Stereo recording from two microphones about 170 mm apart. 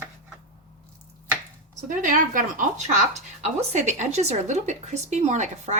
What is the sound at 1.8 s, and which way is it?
A woman's voice, 50° right (ahead or behind).